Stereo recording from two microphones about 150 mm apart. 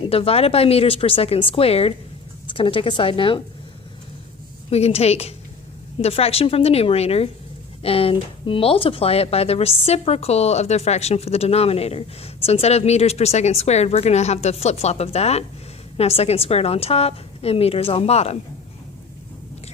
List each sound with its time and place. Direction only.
0.0 s a woman's voice: 40° left (ahead or behind)
4.7 s a woman's voice: 45° left (ahead or behind)